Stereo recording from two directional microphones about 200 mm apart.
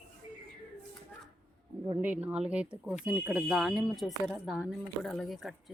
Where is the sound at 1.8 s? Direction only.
15° right (ahead or behind).